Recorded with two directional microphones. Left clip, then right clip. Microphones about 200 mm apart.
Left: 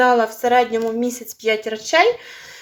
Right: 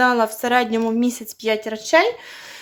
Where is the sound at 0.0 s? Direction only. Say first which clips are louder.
Left 2 dB; 40° right (ahead or behind).